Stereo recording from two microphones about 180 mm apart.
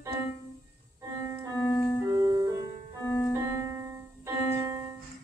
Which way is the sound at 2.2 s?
20° right (ahead or behind).